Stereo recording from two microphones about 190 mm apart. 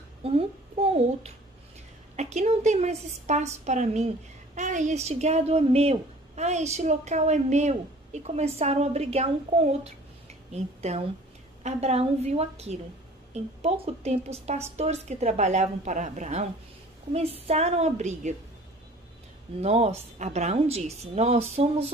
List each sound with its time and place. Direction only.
0.2 s a child's voice: 30° right (ahead or behind)
19.6 s a woman's voice: 35° right (ahead or behind)